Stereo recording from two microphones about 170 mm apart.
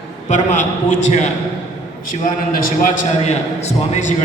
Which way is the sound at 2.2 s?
55° left (ahead or behind).